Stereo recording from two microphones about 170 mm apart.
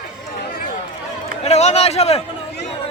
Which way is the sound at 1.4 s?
40° left (ahead or behind).